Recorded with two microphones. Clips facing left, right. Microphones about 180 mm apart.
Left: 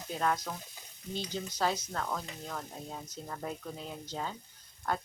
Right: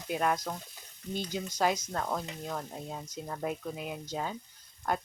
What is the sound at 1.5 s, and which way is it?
Speech, 10° right (ahead or behind).